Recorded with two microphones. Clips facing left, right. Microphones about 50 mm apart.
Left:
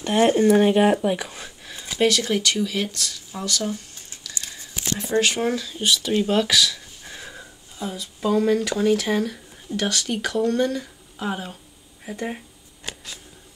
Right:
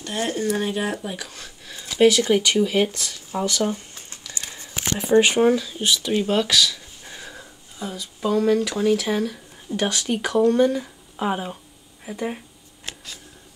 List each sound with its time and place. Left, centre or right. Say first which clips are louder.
0.0 s speech: left 8 dB; left
1.0 s a sound: left 8 dB; left
2.0 s speech: right 4 dB; centre
4.3 s a sound: right 1 dB; right
5.0 s speech: right 6 dB; right
5.5 s speech: right 2 dB; centre
9.8 s speech: right 1 dB; centre
12.0 s speech: right 1 dB; centre
12.8 s a sound: left 1 dB; centre